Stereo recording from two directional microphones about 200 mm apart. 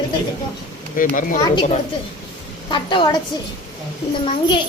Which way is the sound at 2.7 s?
25° left (ahead or behind).